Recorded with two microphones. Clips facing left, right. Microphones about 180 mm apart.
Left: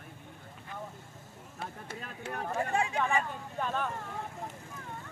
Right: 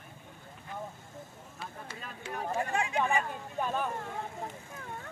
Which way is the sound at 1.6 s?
60° left (ahead or behind).